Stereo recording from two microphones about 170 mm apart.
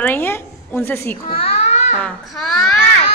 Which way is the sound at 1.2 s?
35° left (ahead or behind).